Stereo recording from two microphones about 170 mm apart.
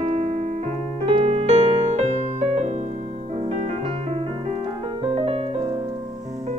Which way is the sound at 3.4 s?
40° right (ahead or behind).